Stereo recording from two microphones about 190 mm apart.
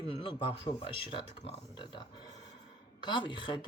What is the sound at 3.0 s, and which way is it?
Speech, 25° left (ahead or behind).